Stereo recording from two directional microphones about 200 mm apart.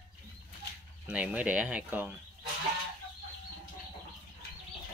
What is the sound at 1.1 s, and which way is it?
Speech, 5° right (ahead or behind).